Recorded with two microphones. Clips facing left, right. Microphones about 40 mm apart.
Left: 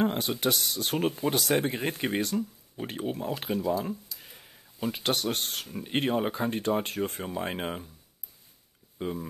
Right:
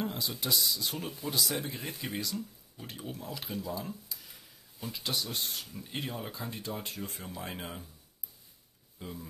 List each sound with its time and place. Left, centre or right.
0.0 s speech: left
4.2 s a sound: left
5.7 s speech: left
8.9 s speech: left